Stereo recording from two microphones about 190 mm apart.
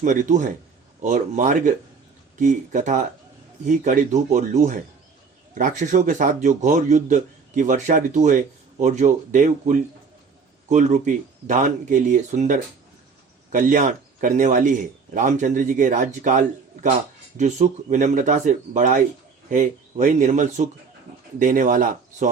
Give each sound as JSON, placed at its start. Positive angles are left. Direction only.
{"t": 0.0, "sound": "a man's voice", "side_deg": -40}